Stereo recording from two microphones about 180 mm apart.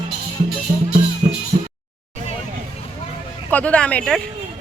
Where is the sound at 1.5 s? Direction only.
35° right (ahead or behind).